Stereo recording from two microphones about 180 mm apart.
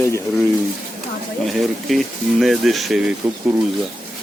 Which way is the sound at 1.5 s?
Centre (ahead or behind).